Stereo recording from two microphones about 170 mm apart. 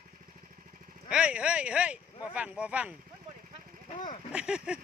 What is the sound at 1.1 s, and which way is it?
Speech, 5° right (ahead or behind).